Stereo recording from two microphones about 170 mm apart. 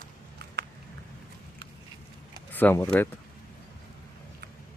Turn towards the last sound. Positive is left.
turn(degrees=15)  # may be behind; listen again after turning